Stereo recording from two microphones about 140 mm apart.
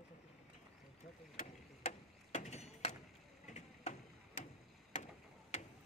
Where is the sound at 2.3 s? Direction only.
50° left (ahead or behind).